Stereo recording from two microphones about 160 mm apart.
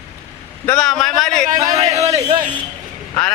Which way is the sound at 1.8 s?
40° right (ahead or behind).